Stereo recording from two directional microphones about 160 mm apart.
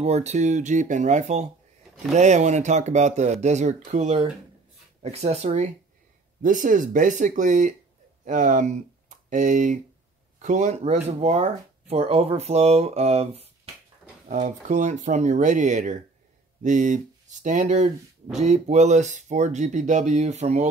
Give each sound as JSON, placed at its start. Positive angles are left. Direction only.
{"t": 0.0, "sound": "speech", "side_deg": -45}
{"t": 6.4, "sound": "speech", "side_deg": -55}